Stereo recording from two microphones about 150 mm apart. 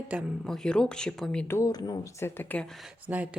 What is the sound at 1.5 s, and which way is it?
Speech, 20° left (ahead or behind).